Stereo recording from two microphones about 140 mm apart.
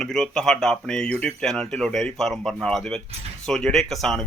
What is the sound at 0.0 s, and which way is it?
Speech, 5° left (ahead or behind).